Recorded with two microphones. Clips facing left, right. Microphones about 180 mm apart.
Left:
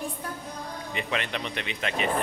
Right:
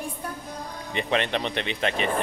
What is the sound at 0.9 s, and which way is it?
Speech, 25° right (ahead or behind).